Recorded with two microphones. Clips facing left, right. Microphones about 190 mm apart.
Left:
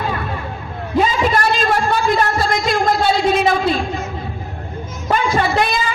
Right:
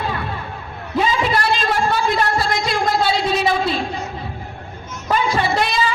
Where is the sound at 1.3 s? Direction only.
45° left (ahead or behind).